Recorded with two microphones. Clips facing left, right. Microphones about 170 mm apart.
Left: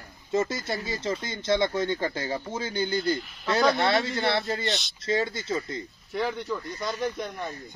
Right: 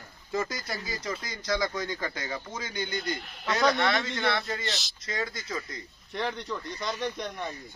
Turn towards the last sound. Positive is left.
turn(degrees=5)  # may be behind; listen again after turning